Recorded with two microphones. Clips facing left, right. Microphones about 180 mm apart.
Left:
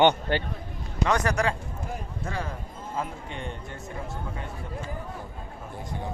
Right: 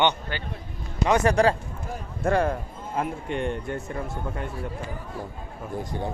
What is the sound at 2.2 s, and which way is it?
Speech, 60° right (ahead or behind).